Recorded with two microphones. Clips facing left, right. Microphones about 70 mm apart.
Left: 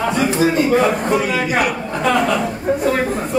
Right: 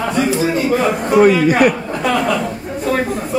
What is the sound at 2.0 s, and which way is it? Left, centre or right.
Speech, centre.